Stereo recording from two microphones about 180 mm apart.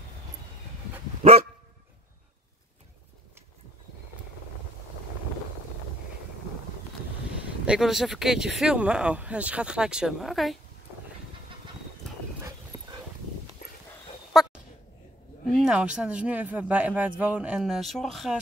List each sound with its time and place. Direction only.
1.2 s dog: 35° right (ahead or behind)
7.3 s speech: 5° right (ahead or behind)
12.4 s dog: 20° right (ahead or behind)
14.3 s a sound: centre (ahead or behind)
15.4 s a man's voice: centre (ahead or behind)